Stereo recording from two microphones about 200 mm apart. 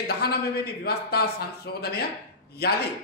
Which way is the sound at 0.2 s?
50° left (ahead or behind).